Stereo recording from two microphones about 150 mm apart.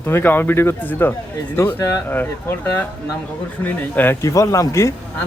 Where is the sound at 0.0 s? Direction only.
15° left (ahead or behind).